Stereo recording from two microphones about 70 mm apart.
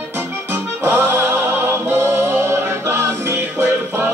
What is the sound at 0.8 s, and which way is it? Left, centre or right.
Music, right.